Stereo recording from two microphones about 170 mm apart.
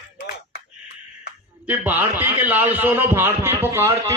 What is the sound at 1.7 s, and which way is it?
A man's voice, 10° right (ahead or behind).